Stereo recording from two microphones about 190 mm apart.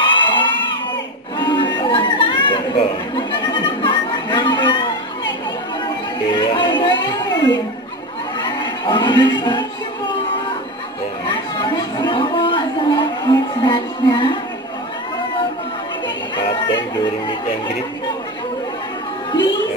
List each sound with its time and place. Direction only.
0.0 s crowd: 25° left (ahead or behind)
1.4 s chatter: 25° left (ahead or behind)
3.2 s a sound: 25° left (ahead or behind)
6.3 s a sound: 25° left (ahead or behind)
11.2 s chatter: 25° left (ahead or behind)
16.6 s music: 25° left (ahead or behind)